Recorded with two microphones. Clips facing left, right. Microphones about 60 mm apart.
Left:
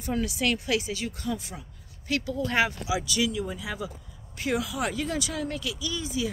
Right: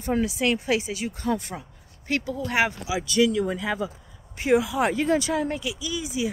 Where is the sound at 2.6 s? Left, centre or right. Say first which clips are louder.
Right 2 dB; right.